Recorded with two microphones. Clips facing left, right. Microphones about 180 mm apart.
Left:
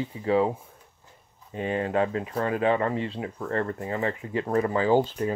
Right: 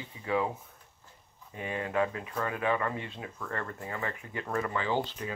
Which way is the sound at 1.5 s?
30° left (ahead or behind).